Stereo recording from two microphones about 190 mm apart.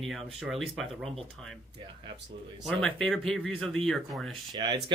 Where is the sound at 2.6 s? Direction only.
5° left (ahead or behind).